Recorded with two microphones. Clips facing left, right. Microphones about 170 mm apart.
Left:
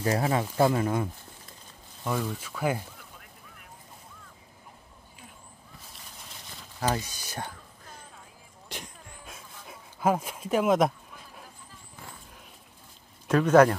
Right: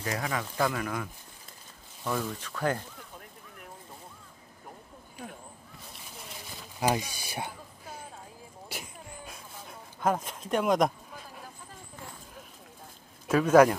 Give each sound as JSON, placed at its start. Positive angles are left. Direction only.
{"t": 0.0, "sound": "speech", "side_deg": 30}
{"t": 2.0, "sound": "speech", "side_deg": 5}
{"t": 6.8, "sound": "a sound", "side_deg": -15}
{"t": 13.3, "sound": "speech", "side_deg": -10}